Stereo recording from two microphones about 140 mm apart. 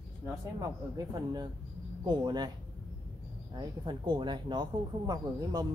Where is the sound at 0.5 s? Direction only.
25° right (ahead or behind).